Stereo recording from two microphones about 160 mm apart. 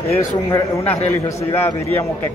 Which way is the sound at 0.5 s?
10° left (ahead or behind).